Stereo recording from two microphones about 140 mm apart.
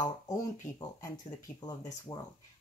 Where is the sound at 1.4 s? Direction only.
30° left (ahead or behind).